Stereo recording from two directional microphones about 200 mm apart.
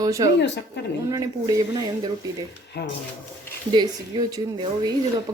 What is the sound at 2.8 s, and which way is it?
Speech, 55° left (ahead or behind).